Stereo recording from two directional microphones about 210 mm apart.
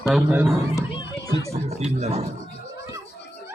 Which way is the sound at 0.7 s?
15° left (ahead or behind).